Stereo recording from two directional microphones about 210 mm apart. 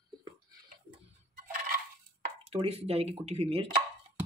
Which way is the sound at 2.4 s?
30° right (ahead or behind).